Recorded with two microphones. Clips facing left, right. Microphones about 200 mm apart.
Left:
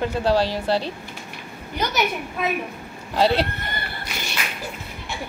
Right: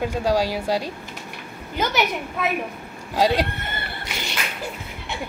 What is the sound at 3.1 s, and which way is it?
Speech, 10° right (ahead or behind).